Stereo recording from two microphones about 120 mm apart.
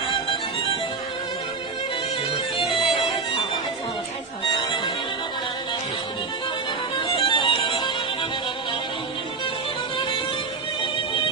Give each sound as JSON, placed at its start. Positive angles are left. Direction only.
{"t": 2.5, "sound": "music", "side_deg": 45}
{"t": 4.6, "sound": "music", "side_deg": 40}
{"t": 7.0, "sound": "music", "side_deg": 45}
{"t": 10.8, "sound": "music", "side_deg": 40}